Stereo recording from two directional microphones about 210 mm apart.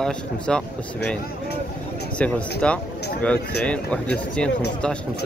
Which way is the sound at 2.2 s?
5° left (ahead or behind).